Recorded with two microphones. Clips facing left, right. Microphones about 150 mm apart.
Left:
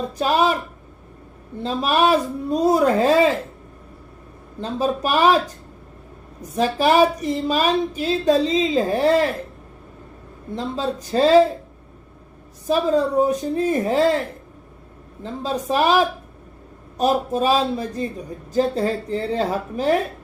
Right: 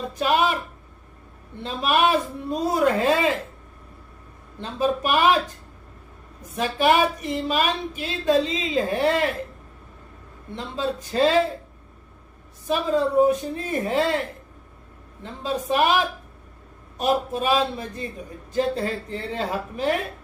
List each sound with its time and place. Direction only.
0.2 s speech: 35° left (ahead or behind)
1.6 s speech: 35° left (ahead or behind)
4.6 s speech: 40° left (ahead or behind)
6.4 s speech: 35° left (ahead or behind)
10.5 s speech: 40° left (ahead or behind)
12.6 s speech: 40° left (ahead or behind)
15.2 s speech: 35° left (ahead or behind)